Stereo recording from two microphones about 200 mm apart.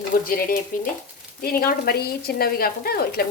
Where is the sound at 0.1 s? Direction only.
45° left (ahead or behind).